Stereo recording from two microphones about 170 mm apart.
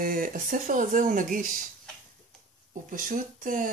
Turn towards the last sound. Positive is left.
turn(degrees=-55)  # may be behind; listen again after turning